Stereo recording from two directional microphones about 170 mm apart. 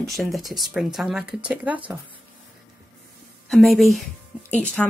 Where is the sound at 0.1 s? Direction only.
Centre (ahead or behind).